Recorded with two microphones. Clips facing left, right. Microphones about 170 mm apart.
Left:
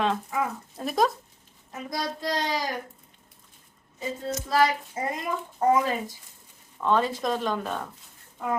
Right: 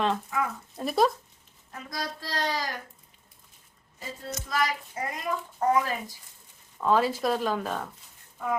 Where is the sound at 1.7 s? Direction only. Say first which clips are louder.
Left 4 dB; 20° left (ahead or behind).